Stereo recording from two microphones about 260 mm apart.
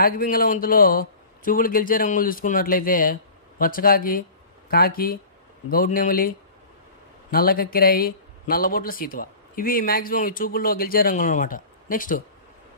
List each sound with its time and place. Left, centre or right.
0.0 s a man's voice: left